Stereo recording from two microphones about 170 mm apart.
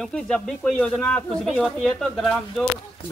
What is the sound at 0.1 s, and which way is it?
Speech, 5° left (ahead or behind).